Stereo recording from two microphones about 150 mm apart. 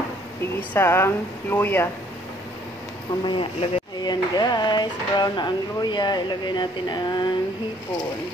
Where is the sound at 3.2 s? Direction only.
35° left (ahead or behind).